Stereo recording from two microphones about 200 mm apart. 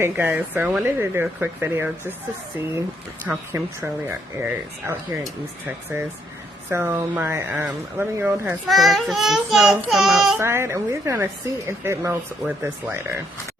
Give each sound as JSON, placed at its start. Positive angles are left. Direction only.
{"t": 0.0, "sound": "a woman's voice", "side_deg": -10}
{"t": 3.2, "sound": "a woman's voice", "side_deg": -10}
{"t": 4.8, "sound": "a woman's voice", "side_deg": -10}
{"t": 8.6, "sound": "a child's voice", "side_deg": 0}
{"t": 10.4, "sound": "a woman's voice", "side_deg": -10}